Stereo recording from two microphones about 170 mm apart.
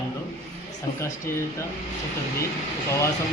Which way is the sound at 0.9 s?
55° left (ahead or behind).